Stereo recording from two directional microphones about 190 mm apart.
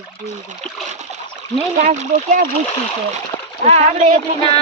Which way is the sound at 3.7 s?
40° right (ahead or behind).